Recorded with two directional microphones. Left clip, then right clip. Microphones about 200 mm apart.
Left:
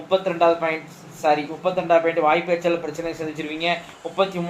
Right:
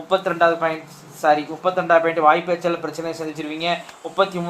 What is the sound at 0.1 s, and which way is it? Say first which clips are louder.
Speech: right 1 dB; 30° right (ahead or behind).